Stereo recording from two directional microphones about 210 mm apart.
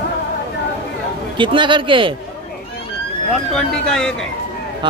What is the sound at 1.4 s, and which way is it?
Speech, 25° right (ahead or behind).